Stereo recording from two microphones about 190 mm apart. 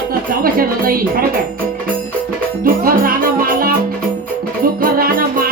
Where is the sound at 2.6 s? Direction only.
50° right (ahead or behind).